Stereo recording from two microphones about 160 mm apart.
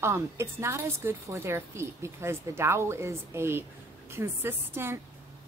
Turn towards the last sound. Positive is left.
turn(degrees=-15)  # may be behind; listen again after turning